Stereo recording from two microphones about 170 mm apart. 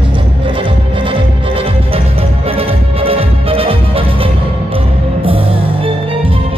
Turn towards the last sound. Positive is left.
turn(degrees=-30)  # may be behind; listen again after turning